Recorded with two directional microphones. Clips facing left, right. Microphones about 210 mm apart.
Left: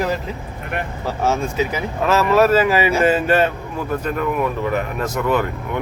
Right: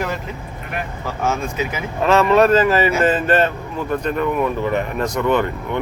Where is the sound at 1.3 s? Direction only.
35° left (ahead or behind).